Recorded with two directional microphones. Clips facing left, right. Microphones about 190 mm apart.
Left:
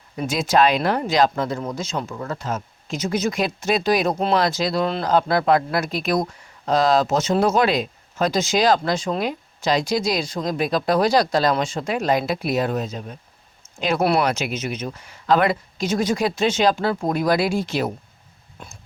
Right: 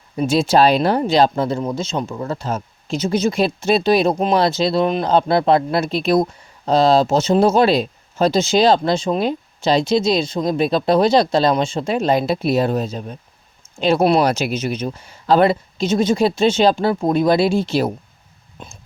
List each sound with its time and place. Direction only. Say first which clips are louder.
0.2 s speech: right 4 dB; 30° right (ahead or behind)
14.3 s speech: right 4 dB; 35° right (ahead or behind)
18.6 s speech: right 3 dB; 20° right (ahead or behind)